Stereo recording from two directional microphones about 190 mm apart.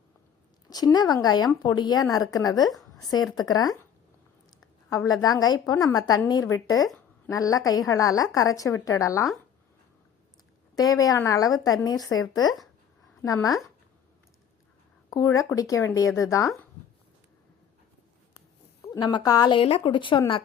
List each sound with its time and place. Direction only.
0.7 s a woman's voice: 20° left (ahead or behind)
4.9 s a woman's voice: 20° left (ahead or behind)
10.8 s a woman's voice: 20° left (ahead or behind)
15.1 s a woman's voice: 15° left (ahead or behind)
18.9 s a woman's voice: 20° left (ahead or behind)